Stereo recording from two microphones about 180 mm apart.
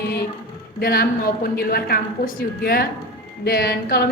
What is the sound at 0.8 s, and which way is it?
A woman's voice, 55° left (ahead or behind).